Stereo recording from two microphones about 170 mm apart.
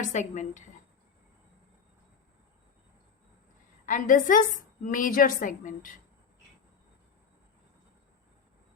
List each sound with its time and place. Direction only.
0.0 s a woman's voice: 45° left (ahead or behind)
3.8 s a woman's voice: 50° left (ahead or behind)